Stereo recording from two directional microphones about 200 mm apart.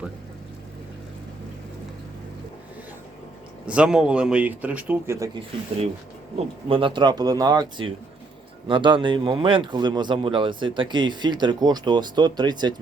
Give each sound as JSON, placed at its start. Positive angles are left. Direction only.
{"t": 3.7, "sound": "speech", "side_deg": -5}
{"t": 6.3, "sound": "speech", "side_deg": -25}